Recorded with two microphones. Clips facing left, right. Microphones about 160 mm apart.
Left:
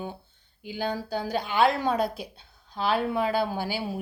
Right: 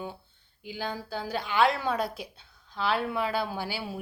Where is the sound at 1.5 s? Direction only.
40° left (ahead or behind).